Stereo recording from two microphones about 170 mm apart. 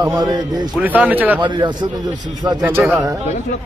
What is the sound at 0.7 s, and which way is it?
Speech, 10° right (ahead or behind).